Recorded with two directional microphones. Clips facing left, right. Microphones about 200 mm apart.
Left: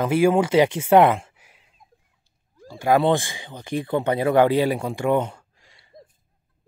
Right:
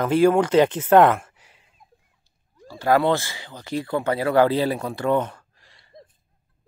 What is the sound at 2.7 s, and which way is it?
Speech, 15° left (ahead or behind).